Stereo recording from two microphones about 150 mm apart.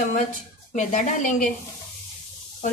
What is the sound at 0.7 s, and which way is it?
Speech, 55° left (ahead or behind).